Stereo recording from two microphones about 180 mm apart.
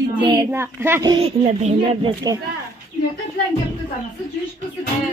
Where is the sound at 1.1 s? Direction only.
30° right (ahead or behind).